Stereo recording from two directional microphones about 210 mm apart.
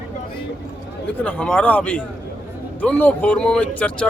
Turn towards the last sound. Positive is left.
turn(degrees=5)  # may be behind; listen again after turning